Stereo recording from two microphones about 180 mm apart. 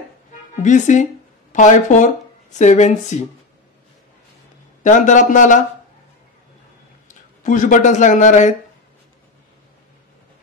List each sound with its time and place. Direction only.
0.6 s a man's voice: 45° left (ahead or behind)
4.8 s a man's voice: 45° left (ahead or behind)
7.1 s a man's voice: 45° left (ahead or behind)